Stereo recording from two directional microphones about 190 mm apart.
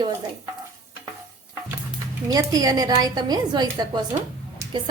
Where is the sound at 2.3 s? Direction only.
20° right (ahead or behind).